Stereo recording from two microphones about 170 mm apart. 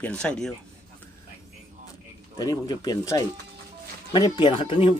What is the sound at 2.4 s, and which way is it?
Speech, 25° left (ahead or behind).